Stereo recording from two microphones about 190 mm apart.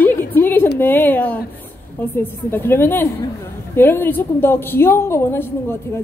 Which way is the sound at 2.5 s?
10° left (ahead or behind).